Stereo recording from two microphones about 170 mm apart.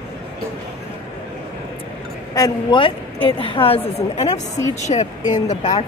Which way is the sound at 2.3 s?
25° left (ahead or behind).